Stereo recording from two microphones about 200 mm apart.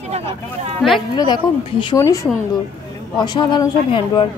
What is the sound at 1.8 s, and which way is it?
Speech, 15° left (ahead or behind).